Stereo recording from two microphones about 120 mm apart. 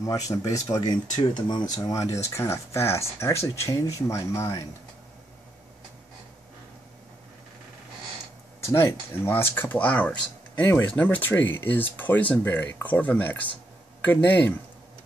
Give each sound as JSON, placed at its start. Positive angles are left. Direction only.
{"t": 0.0, "sound": "speech", "side_deg": 30}
{"t": 8.6, "sound": "speech", "side_deg": 20}